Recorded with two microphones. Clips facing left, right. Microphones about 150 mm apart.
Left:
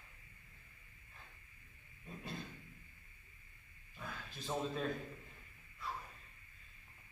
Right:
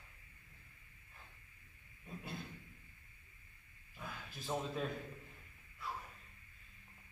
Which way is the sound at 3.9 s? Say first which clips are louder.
Even; 5° right (ahead or behind).